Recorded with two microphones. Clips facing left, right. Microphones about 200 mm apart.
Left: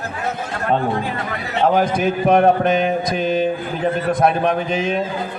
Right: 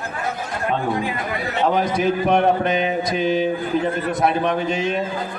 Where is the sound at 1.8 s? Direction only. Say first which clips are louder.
Left 2 dB; 50° left (ahead or behind).